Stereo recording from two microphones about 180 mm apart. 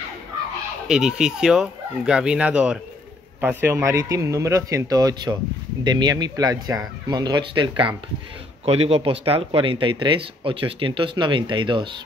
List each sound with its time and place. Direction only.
0.8 s speech: 5° right (ahead or behind); by 12.0 s 25° right (ahead or behind)